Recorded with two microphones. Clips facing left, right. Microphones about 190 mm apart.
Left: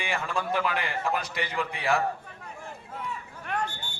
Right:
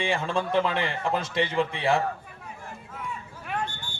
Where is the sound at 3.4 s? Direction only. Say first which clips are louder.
Even; centre (ahead or behind).